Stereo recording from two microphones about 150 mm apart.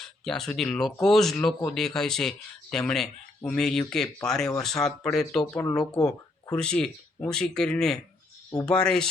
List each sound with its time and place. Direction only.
0.0 s speech: 5° left (ahead or behind)
5.8 s speech: 25° left (ahead or behind)
6.5 s speech: 10° left (ahead or behind)